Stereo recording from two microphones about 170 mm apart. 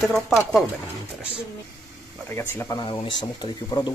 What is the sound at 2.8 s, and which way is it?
Speech, 30° left (ahead or behind).